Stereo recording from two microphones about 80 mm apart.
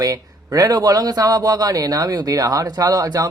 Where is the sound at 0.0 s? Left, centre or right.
Right.